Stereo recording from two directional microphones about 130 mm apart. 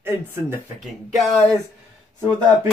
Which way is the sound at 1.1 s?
Centre (ahead or behind).